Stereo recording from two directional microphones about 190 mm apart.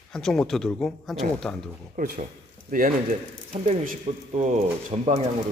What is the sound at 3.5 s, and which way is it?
Speech, 35° right (ahead or behind).